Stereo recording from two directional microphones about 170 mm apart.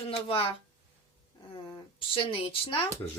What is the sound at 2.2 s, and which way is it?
Speech, 30° left (ahead or behind).